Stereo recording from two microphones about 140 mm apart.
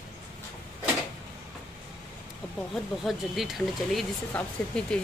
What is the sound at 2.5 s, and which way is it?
Speech, centre (ahead or behind).